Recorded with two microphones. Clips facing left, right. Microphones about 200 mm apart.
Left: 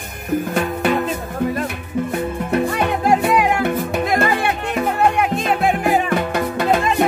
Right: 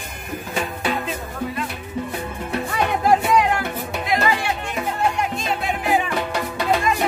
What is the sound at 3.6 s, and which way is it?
Music, 50° left (ahead or behind).